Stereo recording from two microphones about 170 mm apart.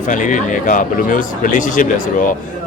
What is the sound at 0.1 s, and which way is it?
Speech, 50° left (ahead or behind).